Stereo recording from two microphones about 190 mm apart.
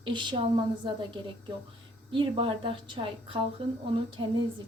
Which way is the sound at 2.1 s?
25° right (ahead or behind).